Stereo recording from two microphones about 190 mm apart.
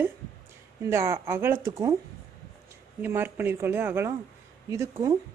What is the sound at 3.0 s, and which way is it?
Speech, 10° right (ahead or behind).